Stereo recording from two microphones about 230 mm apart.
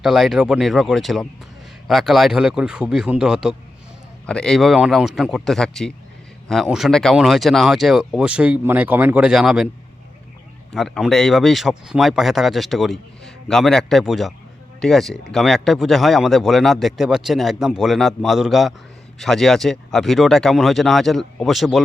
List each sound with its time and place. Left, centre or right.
0.0 s speech: centre
10.7 s speech: centre